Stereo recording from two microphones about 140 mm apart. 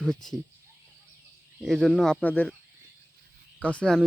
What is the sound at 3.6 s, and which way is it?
Speech, 10° left (ahead or behind).